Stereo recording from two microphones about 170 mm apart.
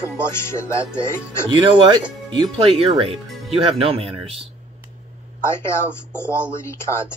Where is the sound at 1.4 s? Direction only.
30° right (ahead or behind).